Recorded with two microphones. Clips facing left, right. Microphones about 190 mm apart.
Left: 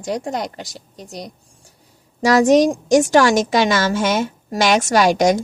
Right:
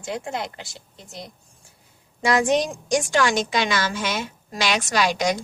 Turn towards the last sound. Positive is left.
turn(degrees=45)  # may be behind; listen again after turning